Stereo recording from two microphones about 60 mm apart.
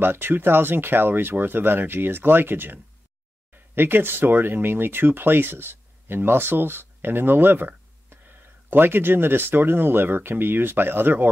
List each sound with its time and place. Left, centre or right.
0.0 s speech: right